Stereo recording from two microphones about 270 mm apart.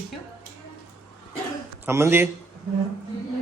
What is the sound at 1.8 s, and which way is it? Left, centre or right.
Speech, centre.